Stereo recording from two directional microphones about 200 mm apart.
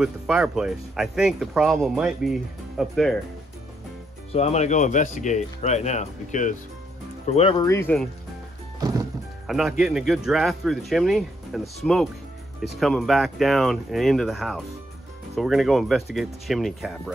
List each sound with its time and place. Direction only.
0.0 s speech: 5° right (ahead or behind)
4.3 s speech: 35° left (ahead or behind)
7.6 s speech: 10° left (ahead or behind)
9.5 s speech: 5° right (ahead or behind)